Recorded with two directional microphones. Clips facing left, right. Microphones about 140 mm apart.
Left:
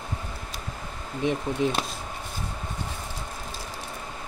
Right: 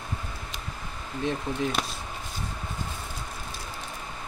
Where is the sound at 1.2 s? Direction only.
20° left (ahead or behind).